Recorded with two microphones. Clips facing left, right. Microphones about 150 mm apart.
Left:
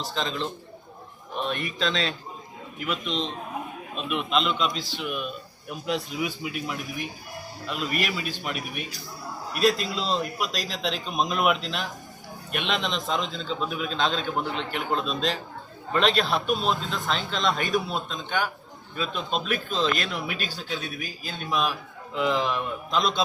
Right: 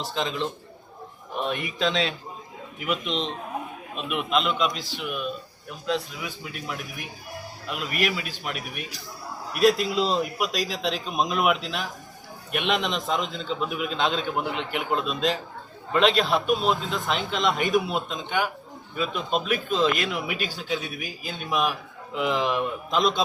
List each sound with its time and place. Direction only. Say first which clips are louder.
0.0 s a man's voice: right 1 dB; 15° right (ahead or behind)
1.5 s a man's voice: right 2 dB; 15° right (ahead or behind)
5.8 s a man's voice: even; 15° left (ahead or behind)
7.7 s a man's voice: right 1 dB; 5° right (ahead or behind)